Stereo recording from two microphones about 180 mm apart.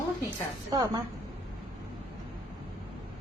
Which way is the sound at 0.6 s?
20° right (ahead or behind).